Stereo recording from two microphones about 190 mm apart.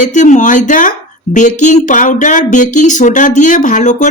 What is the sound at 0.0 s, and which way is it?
A woman's voice, 40° left (ahead or behind).